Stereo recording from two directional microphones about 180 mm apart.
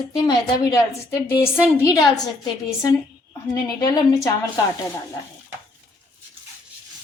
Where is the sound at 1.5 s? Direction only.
10° right (ahead or behind).